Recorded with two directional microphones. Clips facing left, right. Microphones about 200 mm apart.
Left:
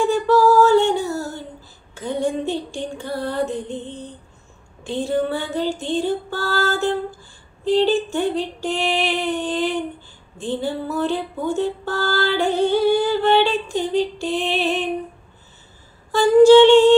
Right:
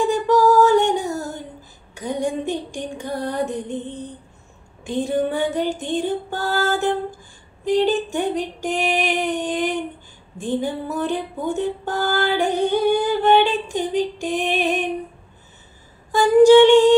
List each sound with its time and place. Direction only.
0.1 s female singing: 15° right (ahead or behind)
2.0 s music: 15° right (ahead or behind)
4.8 s music: 15° right (ahead or behind)
16.1 s music: 15° right (ahead or behind)